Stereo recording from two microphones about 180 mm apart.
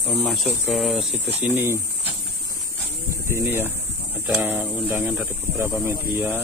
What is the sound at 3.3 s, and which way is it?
Speech, 10° right (ahead or behind).